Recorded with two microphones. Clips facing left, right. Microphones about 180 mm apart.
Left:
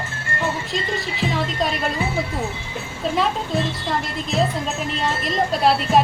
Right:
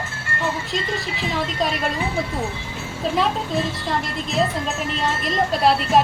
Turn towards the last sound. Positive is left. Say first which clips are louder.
# even
turn(degrees=0)  # may be behind; listen again after turning